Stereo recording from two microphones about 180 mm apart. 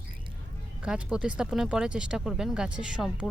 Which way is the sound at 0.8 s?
5° right (ahead or behind).